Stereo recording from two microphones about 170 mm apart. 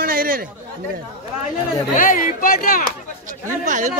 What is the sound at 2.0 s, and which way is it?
Speech, 55° left (ahead or behind).